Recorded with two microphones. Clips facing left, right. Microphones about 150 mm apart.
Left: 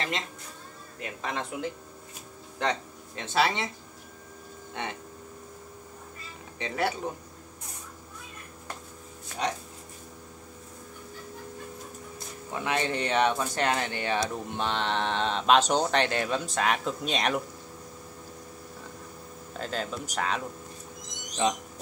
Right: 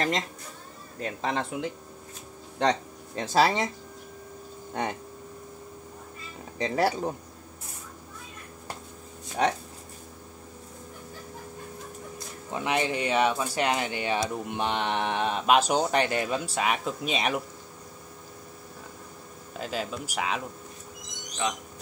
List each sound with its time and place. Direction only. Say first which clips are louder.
0.9 s speech: right 5 dB; 30° right (ahead or behind)
2.6 s speech: right 4 dB; 35° right (ahead or behind)
6.6 s speech: right 4 dB; 35° right (ahead or behind)
9.4 s speech: right 5 dB; 60° right (ahead or behind)
12.5 s speech: right 2 dB; 15° right (ahead or behind)
19.5 s speech: right 1 dB; 10° right (ahead or behind)
21.4 s speech: left 4 dB; 30° left (ahead or behind)